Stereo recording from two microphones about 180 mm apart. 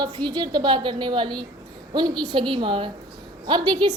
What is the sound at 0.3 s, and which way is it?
A woman's voice, 25° right (ahead or behind).